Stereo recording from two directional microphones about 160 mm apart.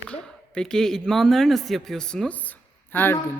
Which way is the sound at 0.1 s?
5° left (ahead or behind).